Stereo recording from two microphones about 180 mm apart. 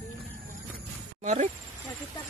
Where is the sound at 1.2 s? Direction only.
40° right (ahead or behind).